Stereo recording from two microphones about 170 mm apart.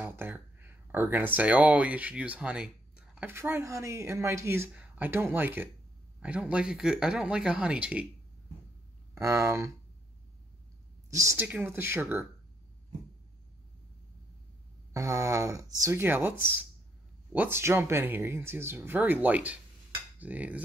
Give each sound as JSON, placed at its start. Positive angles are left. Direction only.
{"t": 0.0, "sound": "speech", "side_deg": -10}
{"t": 9.1, "sound": "speech", "side_deg": -15}
{"t": 11.1, "sound": "speech", "side_deg": -20}
{"t": 15.0, "sound": "speech", "side_deg": -20}